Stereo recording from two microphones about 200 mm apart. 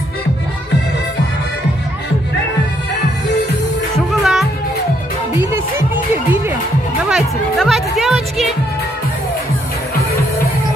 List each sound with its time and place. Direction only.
4.1 s music: centre (ahead or behind)
7.1 s speech: centre (ahead or behind)